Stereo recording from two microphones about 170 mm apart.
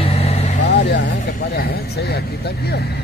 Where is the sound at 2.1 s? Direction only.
70° left (ahead or behind).